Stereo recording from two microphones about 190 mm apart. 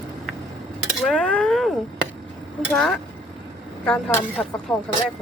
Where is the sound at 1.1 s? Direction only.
5° left (ahead or behind).